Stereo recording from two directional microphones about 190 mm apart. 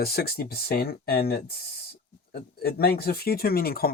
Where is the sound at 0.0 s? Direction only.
55° left (ahead or behind).